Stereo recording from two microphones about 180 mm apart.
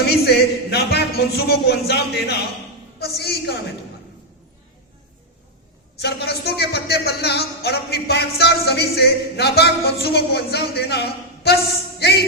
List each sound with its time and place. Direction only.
0.1 s speech: 65° left (ahead or behind)
6.0 s speech: 65° left (ahead or behind)
11.9 s music: 65° left (ahead or behind)